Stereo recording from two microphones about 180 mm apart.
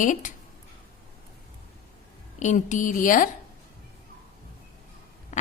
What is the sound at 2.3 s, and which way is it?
Speech, 40° left (ahead or behind).